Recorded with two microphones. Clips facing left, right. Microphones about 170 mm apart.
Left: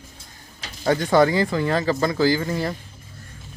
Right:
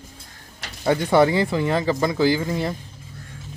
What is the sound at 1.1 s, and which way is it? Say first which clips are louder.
Speech: even; 25° right (ahead or behind).